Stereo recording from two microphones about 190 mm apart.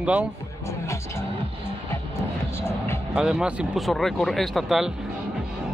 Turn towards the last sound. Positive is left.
turn(degrees=0)  # may be behind; listen again after turning